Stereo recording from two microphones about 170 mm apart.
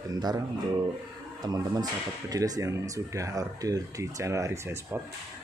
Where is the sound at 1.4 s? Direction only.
20° right (ahead or behind).